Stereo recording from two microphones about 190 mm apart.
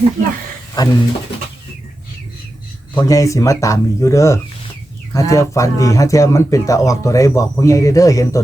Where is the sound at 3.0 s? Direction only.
15° left (ahead or behind).